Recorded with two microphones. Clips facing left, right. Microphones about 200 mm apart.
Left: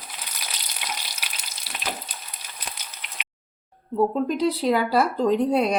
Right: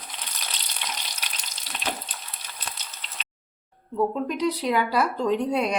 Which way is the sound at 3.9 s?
35° left (ahead or behind).